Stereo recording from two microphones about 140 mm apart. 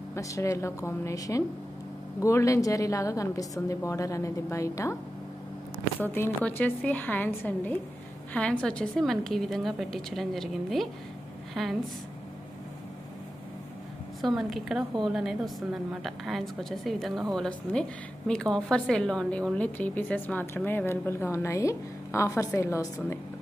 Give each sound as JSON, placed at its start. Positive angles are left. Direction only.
{"t": 0.1, "sound": "a woman's voice", "side_deg": 20}
{"t": 5.9, "sound": "a woman's voice", "side_deg": 15}
{"t": 14.2, "sound": "a woman's voice", "side_deg": 0}